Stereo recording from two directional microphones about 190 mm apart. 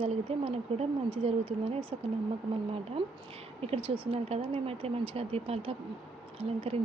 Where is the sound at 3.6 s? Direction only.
30° right (ahead or behind).